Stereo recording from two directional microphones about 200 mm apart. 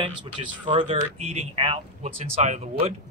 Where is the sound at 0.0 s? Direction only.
25° right (ahead or behind).